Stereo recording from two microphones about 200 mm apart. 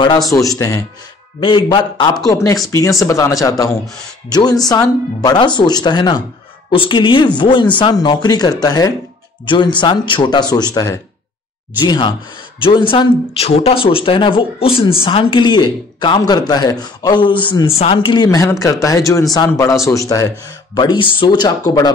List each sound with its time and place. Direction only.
0.0 s speech: 20° left (ahead or behind)